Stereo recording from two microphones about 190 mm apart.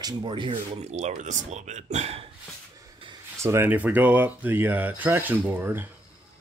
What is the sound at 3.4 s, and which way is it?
Speech, 15° right (ahead or behind).